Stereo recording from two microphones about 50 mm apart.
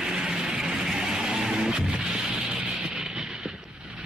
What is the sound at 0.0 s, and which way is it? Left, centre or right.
Music, centre.